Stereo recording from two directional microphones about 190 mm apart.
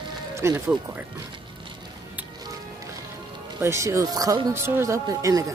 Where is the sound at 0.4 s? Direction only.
15° right (ahead or behind).